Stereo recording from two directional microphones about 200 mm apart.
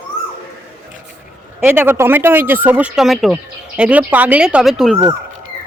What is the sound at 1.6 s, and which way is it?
Speech, 10° right (ahead or behind).